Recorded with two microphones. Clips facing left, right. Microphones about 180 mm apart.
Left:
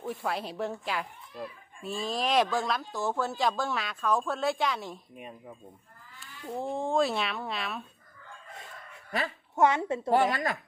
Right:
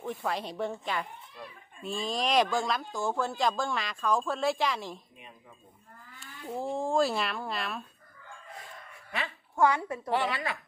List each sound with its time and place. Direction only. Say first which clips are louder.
0.0 s speech: even; 10° left (ahead or behind)
6.4 s speech: even; centre (ahead or behind)
9.6 s a woman's voice: left 1 dB; 20° left (ahead or behind)
10.1 s a woman's voice: left 4 dB; 45° left (ahead or behind)